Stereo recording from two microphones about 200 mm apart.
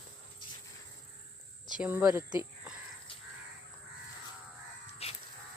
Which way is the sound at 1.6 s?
5° right (ahead or behind).